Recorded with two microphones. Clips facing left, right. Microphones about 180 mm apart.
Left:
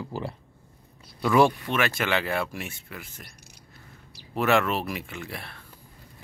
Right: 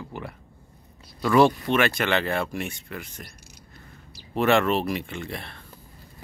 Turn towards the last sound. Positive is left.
turn(degrees=5)  # may be behind; listen again after turning